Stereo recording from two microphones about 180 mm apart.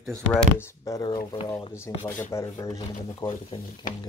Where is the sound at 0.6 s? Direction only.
15° left (ahead or behind).